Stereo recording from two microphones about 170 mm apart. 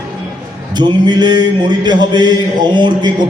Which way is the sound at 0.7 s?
25° right (ahead or behind).